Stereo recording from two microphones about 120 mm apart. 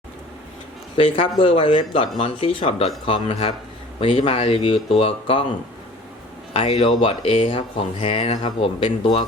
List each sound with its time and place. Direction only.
0.9 s speech: 50° left (ahead or behind)
6.5 s speech: 55° left (ahead or behind)